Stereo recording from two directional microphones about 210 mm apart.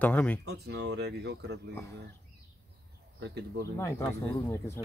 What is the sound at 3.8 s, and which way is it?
Speech, 15° left (ahead or behind).